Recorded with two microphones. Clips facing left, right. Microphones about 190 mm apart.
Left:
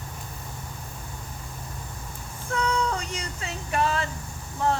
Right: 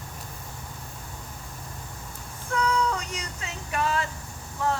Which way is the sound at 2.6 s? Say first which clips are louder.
Right 1 dB; 30° left (ahead or behind).